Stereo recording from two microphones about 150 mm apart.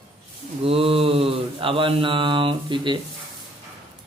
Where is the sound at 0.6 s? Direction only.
40° right (ahead or behind).